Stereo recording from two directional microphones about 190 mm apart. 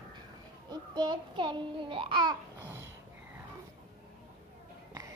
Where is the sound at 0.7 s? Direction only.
20° right (ahead or behind).